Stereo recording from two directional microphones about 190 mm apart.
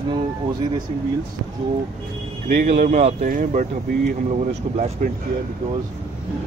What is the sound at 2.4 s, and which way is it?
Speech, 55° right (ahead or behind).